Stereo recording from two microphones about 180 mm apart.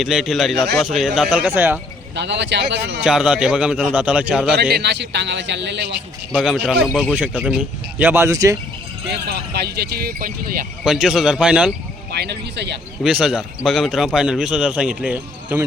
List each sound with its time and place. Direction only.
0.0 s a man's voice: 5° right (ahead or behind)
2.1 s a man's voice: 75° right (ahead or behind)
3.0 s a man's voice: 5° right (ahead or behind)
4.7 s a man's voice: 70° right (ahead or behind)
6.4 s a man's voice: 5° right (ahead or behind)
9.3 s speech: 65° right (ahead or behind)
10.8 s a man's voice: 5° right (ahead or behind)
12.1 s a man's voice: 65° right (ahead or behind)
13.0 s a man's voice: 5° right (ahead or behind)